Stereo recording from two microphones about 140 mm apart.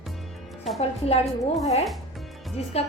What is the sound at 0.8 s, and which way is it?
Speech, 50° left (ahead or behind).